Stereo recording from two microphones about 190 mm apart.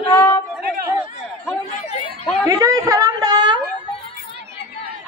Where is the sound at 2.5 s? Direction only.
15° right (ahead or behind).